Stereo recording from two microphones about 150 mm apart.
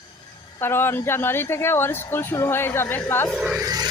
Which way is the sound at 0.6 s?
15° left (ahead or behind).